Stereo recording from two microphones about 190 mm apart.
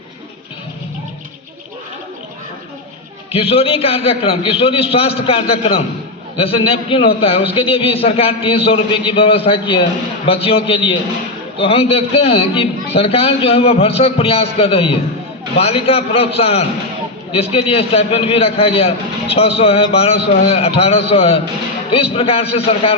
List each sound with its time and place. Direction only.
3.3 s a man's voice: 30° left (ahead or behind)